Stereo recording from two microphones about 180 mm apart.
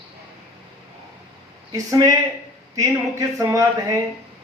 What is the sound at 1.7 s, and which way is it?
Speech, 20° right (ahead or behind).